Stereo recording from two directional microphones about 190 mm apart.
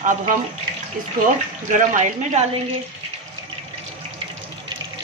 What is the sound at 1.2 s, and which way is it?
Speech, 40° right (ahead or behind).